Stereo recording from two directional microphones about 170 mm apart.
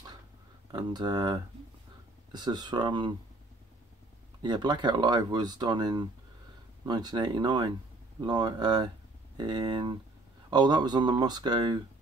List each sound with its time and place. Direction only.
0.7 s speech: 25° right (ahead or behind)
4.4 s speech: 25° right (ahead or behind)